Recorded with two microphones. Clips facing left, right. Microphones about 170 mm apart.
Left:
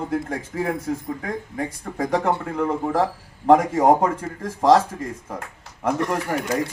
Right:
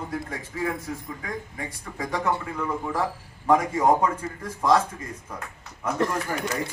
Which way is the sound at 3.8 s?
45° left (ahead or behind).